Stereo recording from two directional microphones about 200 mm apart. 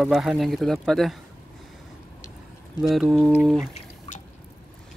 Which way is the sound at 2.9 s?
Centre (ahead or behind).